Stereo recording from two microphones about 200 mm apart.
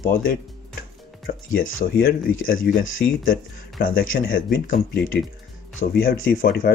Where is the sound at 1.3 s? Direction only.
45° left (ahead or behind).